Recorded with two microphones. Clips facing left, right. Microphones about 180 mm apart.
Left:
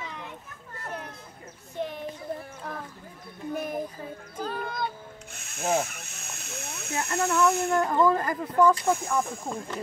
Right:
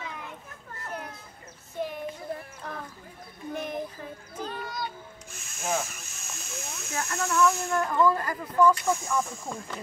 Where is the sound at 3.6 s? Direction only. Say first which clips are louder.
Left 1 dB; 5° left (ahead or behind).